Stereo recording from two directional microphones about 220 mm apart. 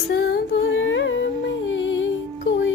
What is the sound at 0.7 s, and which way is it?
Music, 60° left (ahead or behind).